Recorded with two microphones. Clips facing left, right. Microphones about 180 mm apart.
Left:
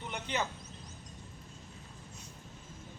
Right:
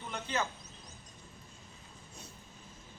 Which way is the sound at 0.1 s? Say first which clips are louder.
Even; 15° left (ahead or behind).